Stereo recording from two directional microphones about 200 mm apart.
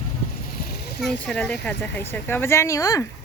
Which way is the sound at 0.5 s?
50° left (ahead or behind).